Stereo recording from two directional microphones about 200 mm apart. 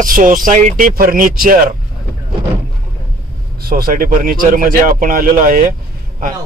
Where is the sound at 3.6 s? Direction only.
50° right (ahead or behind).